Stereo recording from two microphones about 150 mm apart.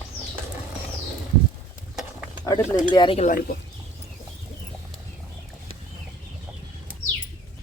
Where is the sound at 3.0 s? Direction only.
35° left (ahead or behind).